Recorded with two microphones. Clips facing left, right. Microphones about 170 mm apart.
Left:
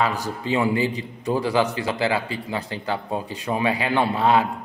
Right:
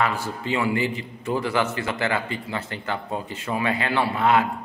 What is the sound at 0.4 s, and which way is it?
A man's voice, 15° left (ahead or behind).